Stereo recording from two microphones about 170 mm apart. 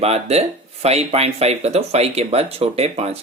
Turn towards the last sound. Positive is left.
turn(degrees=-40)  # may be behind; listen again after turning